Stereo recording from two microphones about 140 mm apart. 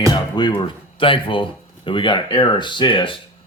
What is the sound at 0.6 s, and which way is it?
Speech, 35° left (ahead or behind).